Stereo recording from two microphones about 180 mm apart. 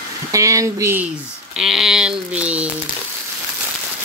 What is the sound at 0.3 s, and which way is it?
Speech, 15° right (ahead or behind).